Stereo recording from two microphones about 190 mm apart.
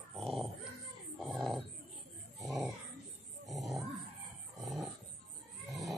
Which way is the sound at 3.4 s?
Centre (ahead or behind).